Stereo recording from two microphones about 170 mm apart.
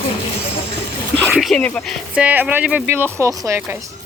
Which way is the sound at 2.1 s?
10° right (ahead or behind).